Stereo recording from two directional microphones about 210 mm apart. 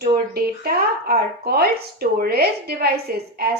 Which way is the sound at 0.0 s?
45° right (ahead or behind).